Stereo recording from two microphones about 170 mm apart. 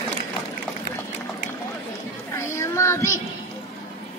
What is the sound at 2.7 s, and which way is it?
Child singing, 15° left (ahead or behind).